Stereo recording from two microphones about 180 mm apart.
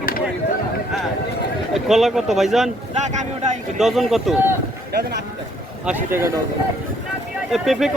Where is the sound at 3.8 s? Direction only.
Centre (ahead or behind).